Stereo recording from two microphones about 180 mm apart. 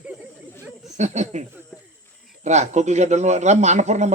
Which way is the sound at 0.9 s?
40° right (ahead or behind).